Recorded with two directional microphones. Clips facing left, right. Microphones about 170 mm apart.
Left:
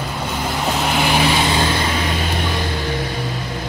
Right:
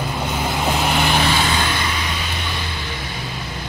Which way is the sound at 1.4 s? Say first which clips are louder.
Left 3 dB; 30° left (ahead or behind).